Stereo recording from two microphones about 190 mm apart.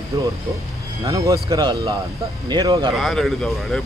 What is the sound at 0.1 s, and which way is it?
A man's voice, 15° right (ahead or behind).